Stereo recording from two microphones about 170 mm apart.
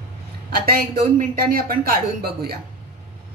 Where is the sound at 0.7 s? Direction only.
60° right (ahead or behind).